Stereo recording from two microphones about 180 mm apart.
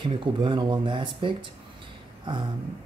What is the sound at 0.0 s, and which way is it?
Speech, 25° right (ahead or behind).